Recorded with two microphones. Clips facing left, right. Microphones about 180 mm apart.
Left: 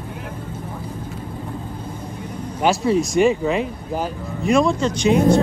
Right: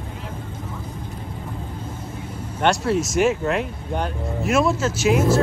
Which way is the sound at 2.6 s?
Centre (ahead or behind).